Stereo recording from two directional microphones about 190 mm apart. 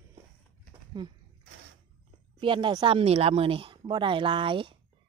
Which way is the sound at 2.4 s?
25° right (ahead or behind).